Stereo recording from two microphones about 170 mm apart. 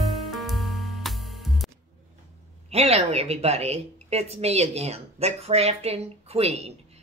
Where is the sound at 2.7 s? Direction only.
35° right (ahead or behind).